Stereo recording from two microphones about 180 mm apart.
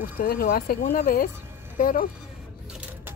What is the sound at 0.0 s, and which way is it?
Speech, 55° left (ahead or behind).